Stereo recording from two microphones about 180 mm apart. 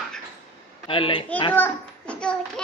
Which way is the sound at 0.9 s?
30° left (ahead or behind).